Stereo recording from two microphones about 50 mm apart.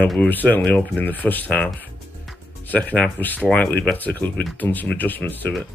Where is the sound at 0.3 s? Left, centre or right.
Left.